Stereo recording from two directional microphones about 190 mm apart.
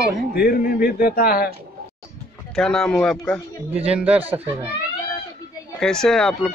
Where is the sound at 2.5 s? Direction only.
5° left (ahead or behind).